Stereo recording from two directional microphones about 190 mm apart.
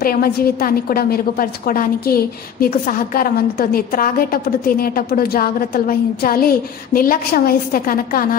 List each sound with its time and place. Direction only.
0.0 s a woman's voice: 50° left (ahead or behind)